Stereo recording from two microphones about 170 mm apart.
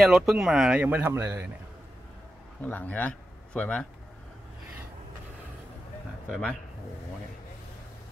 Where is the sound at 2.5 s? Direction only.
10° left (ahead or behind).